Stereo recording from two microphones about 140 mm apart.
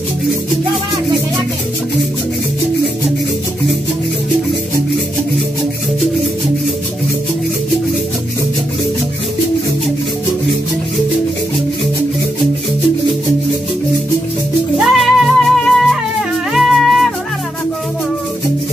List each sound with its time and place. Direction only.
14.8 s music: centre (ahead or behind)